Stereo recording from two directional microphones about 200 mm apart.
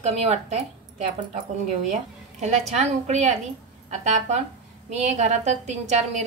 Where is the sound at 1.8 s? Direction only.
35° right (ahead or behind).